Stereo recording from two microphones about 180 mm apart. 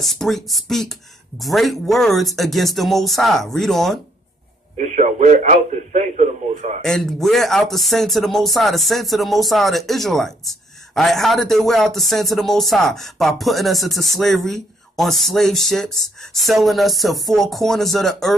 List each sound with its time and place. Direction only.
0.0 s speech: centre (ahead or behind)
4.7 s speech: 40° right (ahead or behind)
6.8 s speech: centre (ahead or behind)